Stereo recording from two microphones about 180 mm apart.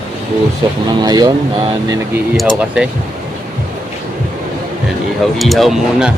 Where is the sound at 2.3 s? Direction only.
5° right (ahead or behind).